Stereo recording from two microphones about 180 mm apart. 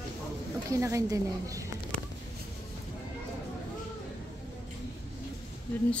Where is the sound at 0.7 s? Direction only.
15° right (ahead or behind).